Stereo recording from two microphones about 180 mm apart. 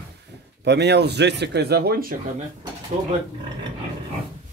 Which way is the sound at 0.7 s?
70° right (ahead or behind).